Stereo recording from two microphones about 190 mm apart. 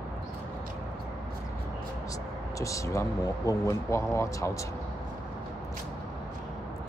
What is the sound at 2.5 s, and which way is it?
Speech, 15° left (ahead or behind).